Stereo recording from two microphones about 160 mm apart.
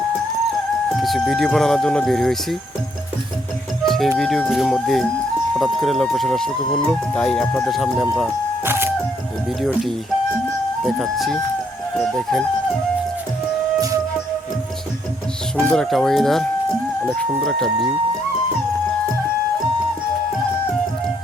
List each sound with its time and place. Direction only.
0.9 s speech: centre (ahead or behind)
3.8 s speech: centre (ahead or behind)
8.6 s music: 15° right (ahead or behind)
9.6 s speech: centre (ahead or behind)
15.5 s speech: 5° left (ahead or behind)